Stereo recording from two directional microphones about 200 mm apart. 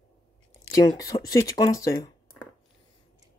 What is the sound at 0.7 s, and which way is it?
Speech, 15° left (ahead or behind).